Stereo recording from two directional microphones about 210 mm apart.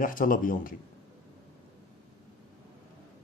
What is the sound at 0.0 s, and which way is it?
Speech, 40° left (ahead or behind).